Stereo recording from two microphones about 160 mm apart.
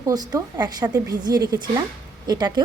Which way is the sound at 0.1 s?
25° right (ahead or behind).